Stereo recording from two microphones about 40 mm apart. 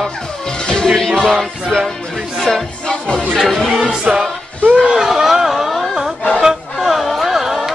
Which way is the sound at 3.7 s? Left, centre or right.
Right.